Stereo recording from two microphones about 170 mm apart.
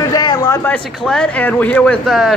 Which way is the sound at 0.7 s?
5° left (ahead or behind).